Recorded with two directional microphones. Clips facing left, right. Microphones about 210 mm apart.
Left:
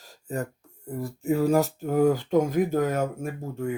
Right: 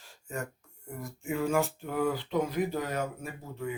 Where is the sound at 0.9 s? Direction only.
35° left (ahead or behind).